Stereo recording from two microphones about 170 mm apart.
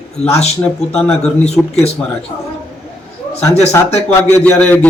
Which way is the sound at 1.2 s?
40° left (ahead or behind).